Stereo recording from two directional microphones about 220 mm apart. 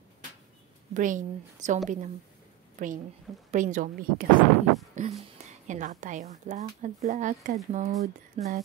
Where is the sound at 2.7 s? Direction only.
35° right (ahead or behind).